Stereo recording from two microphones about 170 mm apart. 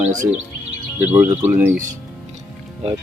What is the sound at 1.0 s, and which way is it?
Speech, 10° right (ahead or behind).